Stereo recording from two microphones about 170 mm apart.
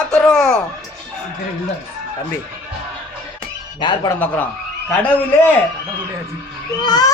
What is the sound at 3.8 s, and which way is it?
Speech, 25° left (ahead or behind).